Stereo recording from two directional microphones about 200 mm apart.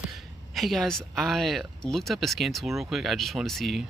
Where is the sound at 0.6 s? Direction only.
Centre (ahead or behind).